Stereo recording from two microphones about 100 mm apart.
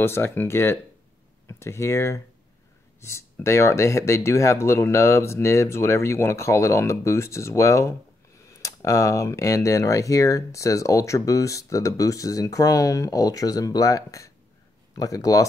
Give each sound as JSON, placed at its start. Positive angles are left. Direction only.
{"t": 0.0, "sound": "speech", "side_deg": 25}